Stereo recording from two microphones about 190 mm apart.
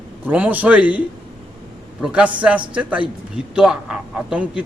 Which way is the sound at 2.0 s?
5° right (ahead or behind).